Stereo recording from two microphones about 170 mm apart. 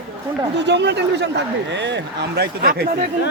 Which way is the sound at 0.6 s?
90° right.